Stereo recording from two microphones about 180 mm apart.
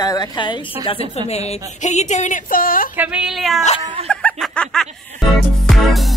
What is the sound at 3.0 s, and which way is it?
Speech, 5° right (ahead or behind).